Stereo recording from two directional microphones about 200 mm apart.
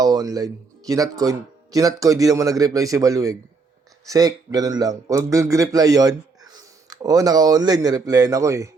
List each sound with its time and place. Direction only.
0.0 s a man's voice: 20° right (ahead or behind)